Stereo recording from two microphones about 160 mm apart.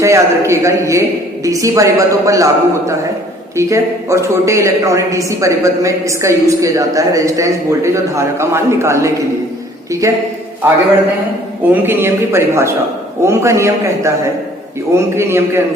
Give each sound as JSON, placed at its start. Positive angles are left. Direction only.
{"t": 0.0, "sound": "a man's voice", "side_deg": -20}